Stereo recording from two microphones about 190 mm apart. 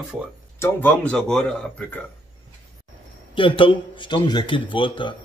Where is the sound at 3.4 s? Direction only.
25° left (ahead or behind).